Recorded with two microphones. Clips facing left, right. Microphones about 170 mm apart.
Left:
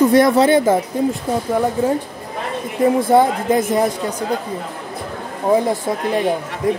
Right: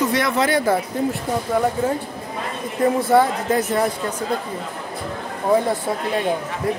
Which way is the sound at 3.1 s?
15° left (ahead or behind).